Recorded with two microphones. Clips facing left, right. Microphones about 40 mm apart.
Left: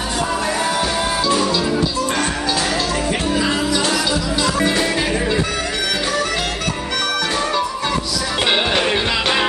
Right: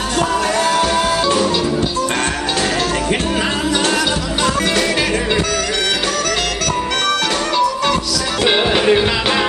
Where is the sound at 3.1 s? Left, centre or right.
Right.